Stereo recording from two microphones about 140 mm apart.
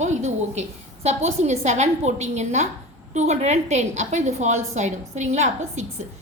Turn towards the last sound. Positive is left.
turn(degrees=-55)  # may be behind; listen again after turning